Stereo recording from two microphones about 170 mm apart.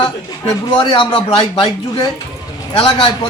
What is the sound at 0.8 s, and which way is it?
Speech, 30° left (ahead or behind).